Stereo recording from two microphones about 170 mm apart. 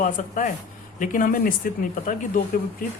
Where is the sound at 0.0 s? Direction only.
50° left (ahead or behind).